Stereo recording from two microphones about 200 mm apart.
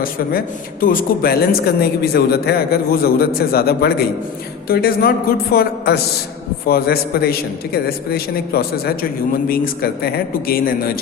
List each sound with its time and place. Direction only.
0.0 s speech: 45° left (ahead or behind)